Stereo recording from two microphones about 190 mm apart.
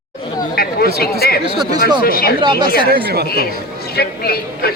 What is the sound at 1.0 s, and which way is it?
A man's voice, 55° left (ahead or behind).